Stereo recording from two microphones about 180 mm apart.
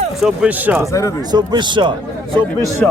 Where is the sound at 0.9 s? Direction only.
15° left (ahead or behind).